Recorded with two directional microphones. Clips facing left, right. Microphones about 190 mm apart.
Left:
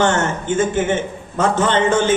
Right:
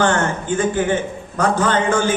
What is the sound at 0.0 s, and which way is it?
A woman's voice, 20° left (ahead or behind).